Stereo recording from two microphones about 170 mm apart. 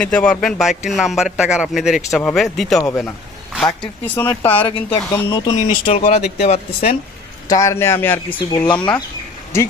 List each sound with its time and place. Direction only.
0.0 s speech: 5° left (ahead or behind)
4.5 s speech: 30° left (ahead or behind)
5.6 s speech: 35° left (ahead or behind)
7.4 s speech: 20° left (ahead or behind)